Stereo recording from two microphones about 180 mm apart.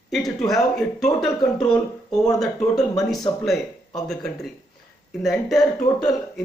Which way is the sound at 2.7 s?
20° left (ahead or behind).